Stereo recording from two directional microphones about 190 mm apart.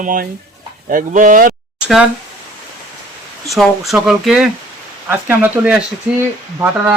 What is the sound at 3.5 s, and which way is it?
Speech, centre (ahead or behind).